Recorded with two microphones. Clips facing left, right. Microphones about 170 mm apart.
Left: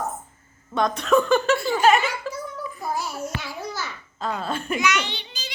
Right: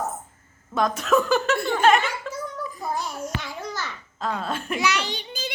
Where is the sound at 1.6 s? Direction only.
5° left (ahead or behind).